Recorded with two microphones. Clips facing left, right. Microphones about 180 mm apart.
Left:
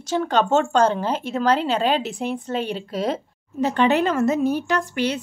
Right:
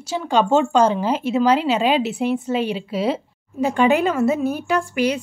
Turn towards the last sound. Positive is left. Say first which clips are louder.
# right 3 dB
turn(degrees=-10)  # may be behind; listen again after turning